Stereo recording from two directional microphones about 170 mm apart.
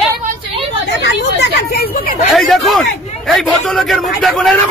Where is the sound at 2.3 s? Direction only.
Centre (ahead or behind).